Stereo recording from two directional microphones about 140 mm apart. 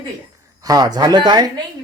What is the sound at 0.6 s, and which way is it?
Speech, 25° right (ahead or behind).